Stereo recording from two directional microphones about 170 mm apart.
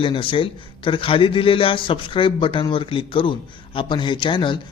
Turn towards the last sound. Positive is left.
turn(degrees=30)  # may be behind; listen again after turning